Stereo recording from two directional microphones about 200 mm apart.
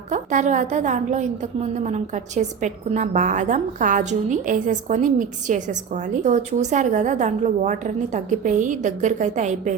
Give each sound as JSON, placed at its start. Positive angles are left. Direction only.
{"t": 0.1, "sound": "a woman's voice", "side_deg": -40}